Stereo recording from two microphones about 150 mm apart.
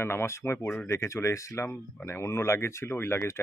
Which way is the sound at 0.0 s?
15° left (ahead or behind).